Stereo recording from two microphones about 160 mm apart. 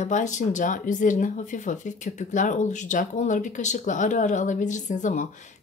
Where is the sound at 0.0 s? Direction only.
50° left (ahead or behind).